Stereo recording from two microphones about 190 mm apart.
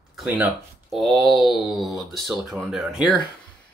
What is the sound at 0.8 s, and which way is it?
Speech, centre (ahead or behind).